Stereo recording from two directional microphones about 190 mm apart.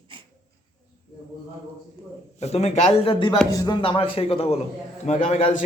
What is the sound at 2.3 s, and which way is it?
A man's voice, 35° left (ahead or behind).